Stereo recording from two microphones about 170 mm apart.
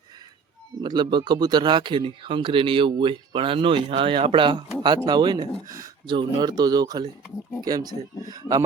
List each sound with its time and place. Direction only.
0.8 s speech: 25° right (ahead or behind)